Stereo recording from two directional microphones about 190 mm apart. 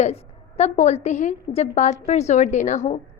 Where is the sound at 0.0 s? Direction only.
35° left (ahead or behind).